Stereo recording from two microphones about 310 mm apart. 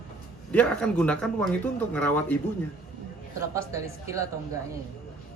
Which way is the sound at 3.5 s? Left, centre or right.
Centre.